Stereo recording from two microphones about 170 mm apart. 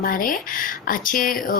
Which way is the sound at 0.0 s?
55° left (ahead or behind).